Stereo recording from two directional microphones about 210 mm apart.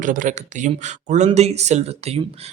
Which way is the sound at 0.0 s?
40° right (ahead or behind).